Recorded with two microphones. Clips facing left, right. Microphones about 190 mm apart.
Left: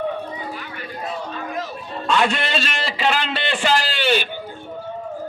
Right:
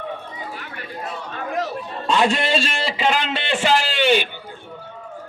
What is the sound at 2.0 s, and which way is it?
A man's voice, 30° right (ahead or behind).